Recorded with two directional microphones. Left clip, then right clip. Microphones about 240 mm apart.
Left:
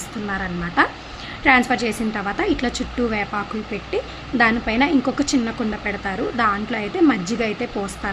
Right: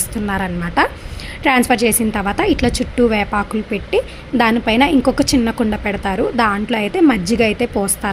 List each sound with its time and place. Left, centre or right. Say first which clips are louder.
0.3 s a woman's voice: right 4 dB; right